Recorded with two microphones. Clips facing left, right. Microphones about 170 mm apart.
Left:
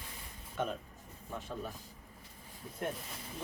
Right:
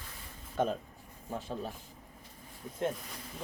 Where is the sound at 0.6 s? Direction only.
35° right (ahead or behind).